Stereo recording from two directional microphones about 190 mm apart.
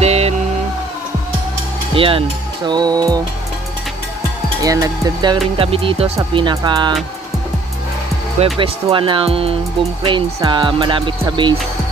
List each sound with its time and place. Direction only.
0.0 s music: 35° right (ahead or behind)
2.0 s speech: 30° right (ahead or behind)
4.6 s music: 15° right (ahead or behind)
8.5 s music: 25° right (ahead or behind)